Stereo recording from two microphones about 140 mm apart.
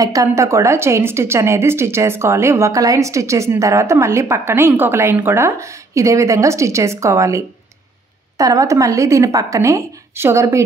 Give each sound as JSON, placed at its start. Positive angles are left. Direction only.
{"t": 0.0, "sound": "a woman's voice", "side_deg": -25}